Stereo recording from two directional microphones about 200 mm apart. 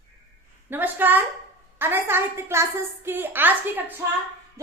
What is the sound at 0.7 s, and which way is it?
A woman's voice, 10° right (ahead or behind).